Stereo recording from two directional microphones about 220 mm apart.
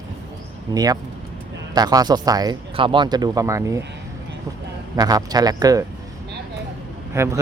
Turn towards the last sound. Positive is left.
turn(degrees=-10)  # may be behind; listen again after turning